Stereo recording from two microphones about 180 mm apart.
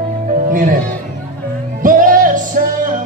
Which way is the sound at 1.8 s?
50° right (ahead or behind).